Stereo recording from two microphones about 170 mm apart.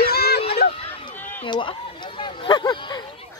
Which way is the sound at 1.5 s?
30° left (ahead or behind).